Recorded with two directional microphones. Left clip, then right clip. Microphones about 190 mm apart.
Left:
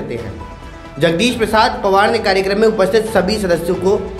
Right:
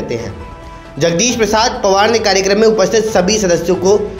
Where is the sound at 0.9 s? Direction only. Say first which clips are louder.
Right 1 dB; 15° right (ahead or behind).